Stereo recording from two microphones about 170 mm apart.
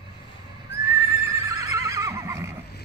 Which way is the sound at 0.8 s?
15° right (ahead or behind).